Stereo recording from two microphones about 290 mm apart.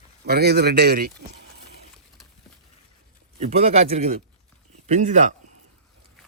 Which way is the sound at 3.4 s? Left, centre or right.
Right.